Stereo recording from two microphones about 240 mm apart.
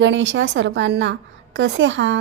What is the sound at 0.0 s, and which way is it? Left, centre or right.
A woman's voice, right.